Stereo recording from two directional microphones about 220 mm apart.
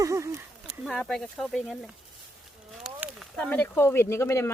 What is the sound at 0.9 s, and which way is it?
Speech, centre (ahead or behind).